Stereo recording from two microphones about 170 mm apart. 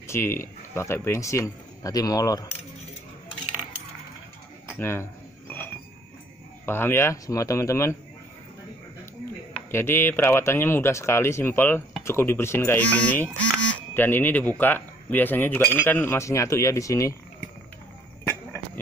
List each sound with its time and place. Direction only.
0.0 s speech: 15° left (ahead or behind)
4.7 s speech: 15° left (ahead or behind)
6.6 s speech: 15° left (ahead or behind)
9.5 s speech: 15° left (ahead or behind)